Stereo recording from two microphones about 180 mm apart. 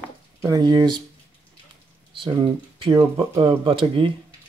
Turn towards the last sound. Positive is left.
turn(degrees=-30)  # may be behind; listen again after turning